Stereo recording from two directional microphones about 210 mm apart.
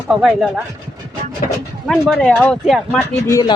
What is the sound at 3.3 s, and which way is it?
Speech, 15° left (ahead or behind).